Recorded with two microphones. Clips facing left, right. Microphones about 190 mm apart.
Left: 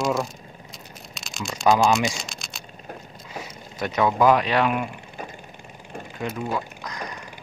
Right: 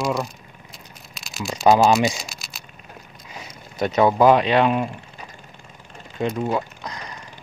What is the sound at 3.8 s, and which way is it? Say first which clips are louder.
Speech: right 4 dB; 25° right (ahead or behind).